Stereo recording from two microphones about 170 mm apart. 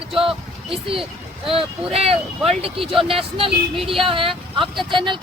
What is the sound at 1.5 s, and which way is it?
Speech, 35° right (ahead or behind).